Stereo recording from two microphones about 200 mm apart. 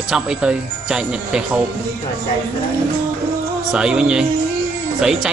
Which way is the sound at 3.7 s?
5° right (ahead or behind).